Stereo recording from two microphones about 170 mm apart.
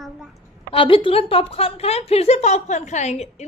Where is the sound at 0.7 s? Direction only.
30° left (ahead or behind).